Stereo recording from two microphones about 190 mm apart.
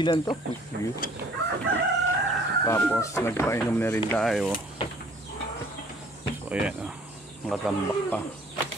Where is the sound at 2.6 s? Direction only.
15° left (ahead or behind).